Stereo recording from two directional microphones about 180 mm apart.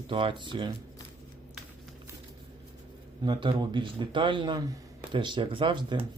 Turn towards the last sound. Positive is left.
turn(degrees=-25)  # may be behind; listen again after turning